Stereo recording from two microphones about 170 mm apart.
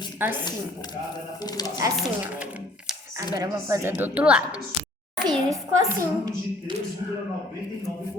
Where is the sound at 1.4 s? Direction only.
25° left (ahead or behind).